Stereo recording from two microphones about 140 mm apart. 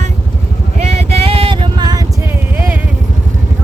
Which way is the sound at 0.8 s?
45° right (ahead or behind).